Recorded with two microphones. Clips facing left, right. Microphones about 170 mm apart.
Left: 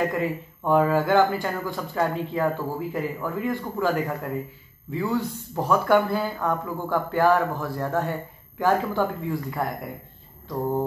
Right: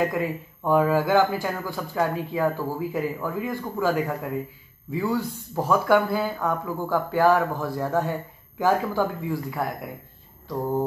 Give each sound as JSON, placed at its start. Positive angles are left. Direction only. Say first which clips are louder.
{"t": 0.0, "sound": "speech", "louder": "even", "side_deg": -5}